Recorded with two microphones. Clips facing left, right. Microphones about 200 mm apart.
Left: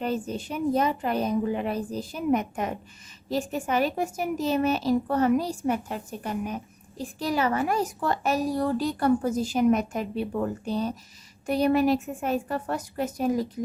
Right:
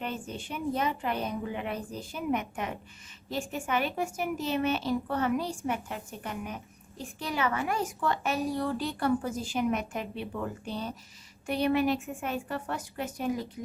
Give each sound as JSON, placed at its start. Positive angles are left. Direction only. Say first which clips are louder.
{"t": 0.0, "sound": "a woman's voice", "louder": "left 7 dB", "side_deg": 40}